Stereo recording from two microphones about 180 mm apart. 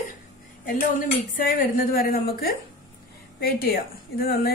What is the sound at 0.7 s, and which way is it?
A woman's voice, 50° left (ahead or behind).